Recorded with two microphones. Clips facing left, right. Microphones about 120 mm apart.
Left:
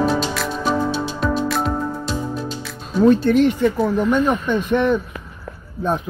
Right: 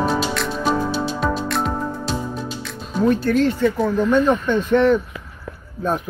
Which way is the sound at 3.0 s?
20° left (ahead or behind).